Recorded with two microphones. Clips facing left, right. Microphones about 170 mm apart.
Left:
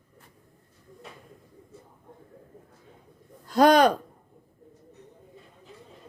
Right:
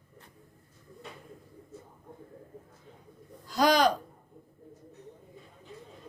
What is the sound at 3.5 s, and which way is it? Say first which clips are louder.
Speech: left 6 dB; 55° left (ahead or behind).